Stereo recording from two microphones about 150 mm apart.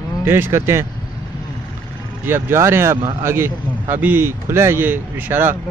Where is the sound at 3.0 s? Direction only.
35° right (ahead or behind).